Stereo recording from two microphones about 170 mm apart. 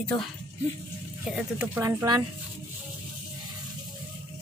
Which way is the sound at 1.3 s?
10° right (ahead or behind).